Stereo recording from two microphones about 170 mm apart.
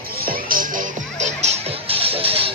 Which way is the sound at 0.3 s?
55° right (ahead or behind).